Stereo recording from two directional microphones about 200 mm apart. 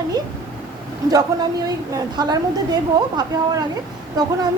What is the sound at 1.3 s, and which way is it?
A woman's voice, 15° right (ahead or behind).